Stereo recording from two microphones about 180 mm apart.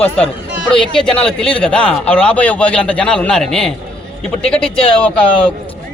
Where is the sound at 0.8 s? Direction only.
5° left (ahead or behind).